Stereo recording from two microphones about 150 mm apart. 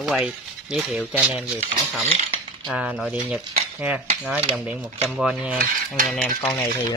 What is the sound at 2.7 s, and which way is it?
Speech, 5° right (ahead or behind).